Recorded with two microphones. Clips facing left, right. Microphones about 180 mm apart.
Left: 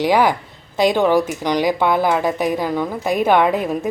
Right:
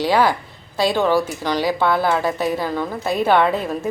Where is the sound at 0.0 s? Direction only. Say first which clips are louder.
Left 2 dB; 15° left (ahead or behind).